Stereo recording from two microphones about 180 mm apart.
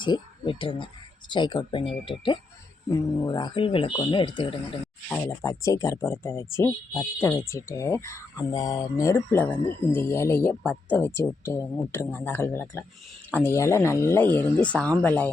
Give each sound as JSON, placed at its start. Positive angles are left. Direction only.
{"t": 0.0, "sound": "speech", "side_deg": 25}
{"t": 5.0, "sound": "speech", "side_deg": 10}